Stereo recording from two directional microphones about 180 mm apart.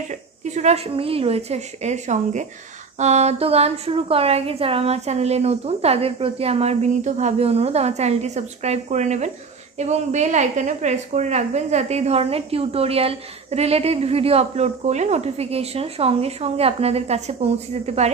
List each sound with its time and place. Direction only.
0.1 s speech: 40° right (ahead or behind)